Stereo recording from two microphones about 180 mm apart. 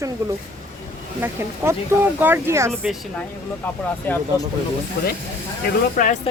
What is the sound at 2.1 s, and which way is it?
Speech, 10° right (ahead or behind).